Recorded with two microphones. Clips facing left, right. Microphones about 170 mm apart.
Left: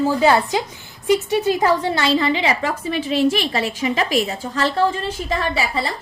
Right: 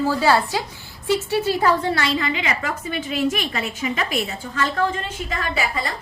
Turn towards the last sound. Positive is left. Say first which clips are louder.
# left 3 dB
turn(degrees=35)  # may be behind; listen again after turning